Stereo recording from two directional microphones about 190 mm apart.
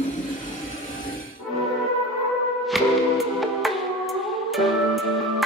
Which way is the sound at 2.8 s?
Centre (ahead or behind).